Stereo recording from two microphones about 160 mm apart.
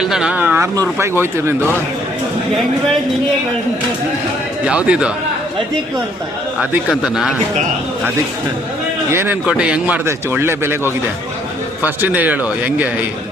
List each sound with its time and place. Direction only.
0.0 s speech: 5° right (ahead or behind)
4.6 s speech: 5° right (ahead or behind)
6.9 s speech: centre (ahead or behind)
9.1 s speech: 10° right (ahead or behind)
11.8 s speech: 10° right (ahead or behind)